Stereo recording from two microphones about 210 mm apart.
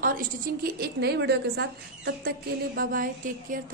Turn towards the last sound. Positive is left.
turn(degrees=-40)  # may be behind; listen again after turning